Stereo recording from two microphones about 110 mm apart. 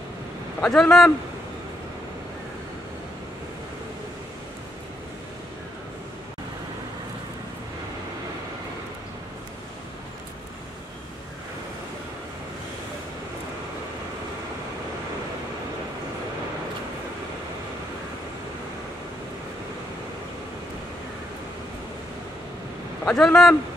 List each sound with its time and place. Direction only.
0.6 s speech: 5° left (ahead or behind)
23.0 s speech: 5° left (ahead or behind)